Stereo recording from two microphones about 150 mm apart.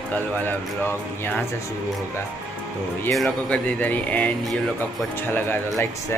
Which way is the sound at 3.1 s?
5° left (ahead or behind).